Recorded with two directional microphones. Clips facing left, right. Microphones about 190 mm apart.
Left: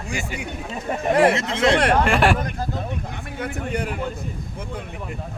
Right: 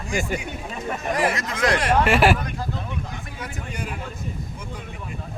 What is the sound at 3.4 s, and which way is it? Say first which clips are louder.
Speech: left 8 dB; 60° left (ahead or behind).